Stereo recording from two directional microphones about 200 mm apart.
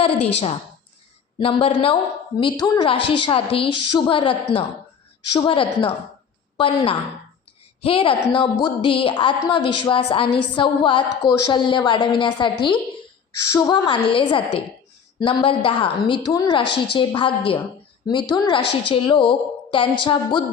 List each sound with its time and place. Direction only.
0.0 s a woman's voice: 30° left (ahead or behind)